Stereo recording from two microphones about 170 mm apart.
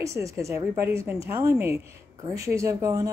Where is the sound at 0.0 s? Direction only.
20° right (ahead or behind).